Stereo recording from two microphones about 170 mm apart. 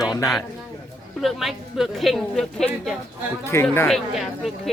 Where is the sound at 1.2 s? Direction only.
Centre (ahead or behind).